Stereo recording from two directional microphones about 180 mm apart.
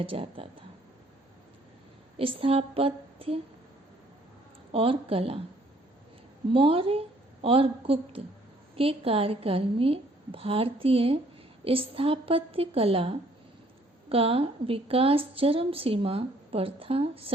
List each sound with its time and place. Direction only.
0.0 s a woman's voice: 30° right (ahead or behind)
2.1 s a woman's voice: 30° right (ahead or behind)
4.7 s a woman's voice: 30° right (ahead or behind)
6.5 s a woman's voice: 30° right (ahead or behind)